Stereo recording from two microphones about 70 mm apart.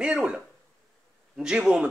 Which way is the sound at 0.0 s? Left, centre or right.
Centre.